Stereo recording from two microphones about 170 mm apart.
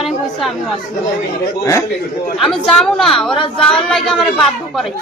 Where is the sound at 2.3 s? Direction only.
Centre (ahead or behind).